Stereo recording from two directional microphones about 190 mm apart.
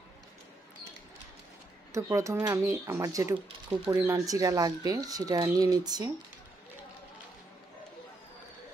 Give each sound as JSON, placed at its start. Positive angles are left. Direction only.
{"t": 1.9, "sound": "speech", "side_deg": -15}